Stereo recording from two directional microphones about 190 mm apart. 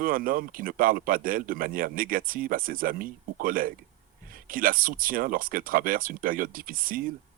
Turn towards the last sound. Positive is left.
turn(degrees=-45)  # may be behind; listen again after turning